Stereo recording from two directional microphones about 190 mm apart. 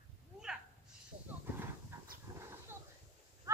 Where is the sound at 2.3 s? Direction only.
20° right (ahead or behind).